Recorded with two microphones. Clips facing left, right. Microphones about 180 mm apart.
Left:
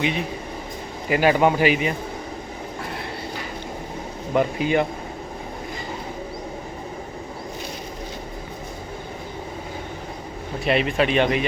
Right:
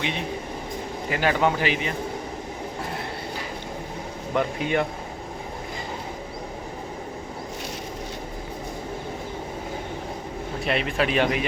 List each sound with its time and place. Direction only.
1.1 s a man's voice: 15° left (ahead or behind)
4.4 s speech: 5° left (ahead or behind)
10.6 s speech: centre (ahead or behind)